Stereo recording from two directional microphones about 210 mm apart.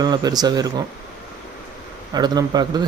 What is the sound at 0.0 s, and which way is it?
Speech, 20° right (ahead or behind).